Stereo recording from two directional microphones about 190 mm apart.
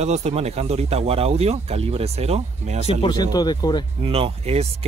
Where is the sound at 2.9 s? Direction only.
25° left (ahead or behind).